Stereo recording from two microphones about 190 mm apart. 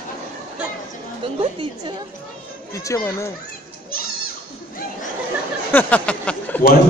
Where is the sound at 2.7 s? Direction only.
15° left (ahead or behind).